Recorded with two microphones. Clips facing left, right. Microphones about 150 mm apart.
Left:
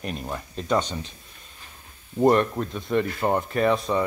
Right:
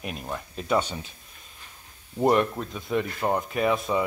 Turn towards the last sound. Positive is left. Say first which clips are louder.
# left 2 dB
turn(degrees=-5)  # may be behind; listen again after turning